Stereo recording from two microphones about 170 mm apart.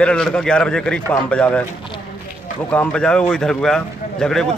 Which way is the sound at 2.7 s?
5° left (ahead or behind).